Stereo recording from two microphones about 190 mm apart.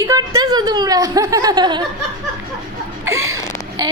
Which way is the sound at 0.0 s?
20° right (ahead or behind).